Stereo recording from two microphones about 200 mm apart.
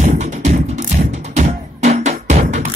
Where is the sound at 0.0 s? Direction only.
35° right (ahead or behind).